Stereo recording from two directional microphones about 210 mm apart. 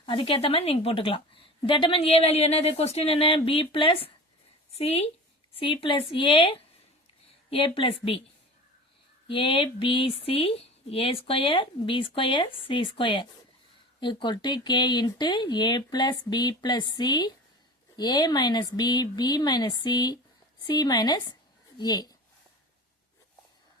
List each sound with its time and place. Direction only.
0.0 s a woman's voice: 25° left (ahead or behind)
9.2 s a woman's voice: 25° left (ahead or behind)